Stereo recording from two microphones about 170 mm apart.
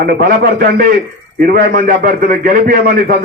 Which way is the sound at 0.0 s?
60° right (ahead or behind).